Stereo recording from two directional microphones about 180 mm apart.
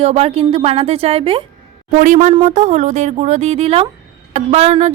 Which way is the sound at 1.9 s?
45° right (ahead or behind).